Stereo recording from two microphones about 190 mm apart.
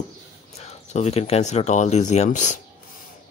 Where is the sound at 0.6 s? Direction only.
35° left (ahead or behind).